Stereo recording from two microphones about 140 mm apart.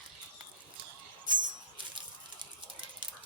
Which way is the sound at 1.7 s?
35° right (ahead or behind).